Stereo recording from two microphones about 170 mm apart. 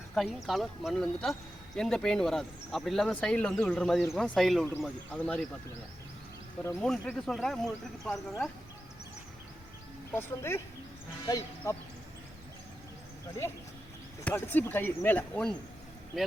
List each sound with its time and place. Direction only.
0.1 s speech: centre (ahead or behind)
6.8 s speech: 5° left (ahead or behind)
10.1 s speech: 15° left (ahead or behind)
14.3 s speech: 10° left (ahead or behind)